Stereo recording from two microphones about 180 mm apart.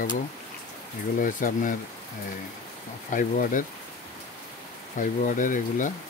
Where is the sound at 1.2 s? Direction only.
45° left (ahead or behind).